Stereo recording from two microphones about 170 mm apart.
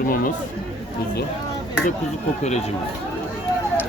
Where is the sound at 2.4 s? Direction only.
40° left (ahead or behind).